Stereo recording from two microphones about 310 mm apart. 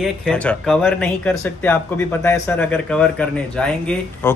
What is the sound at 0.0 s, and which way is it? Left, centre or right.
Speech, centre.